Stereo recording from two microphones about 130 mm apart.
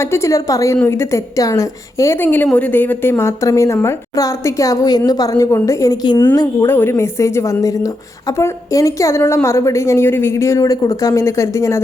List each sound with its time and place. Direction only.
0.0 s a woman's voice: 20° left (ahead or behind)
6.7 s a woman's voice: 15° left (ahead or behind)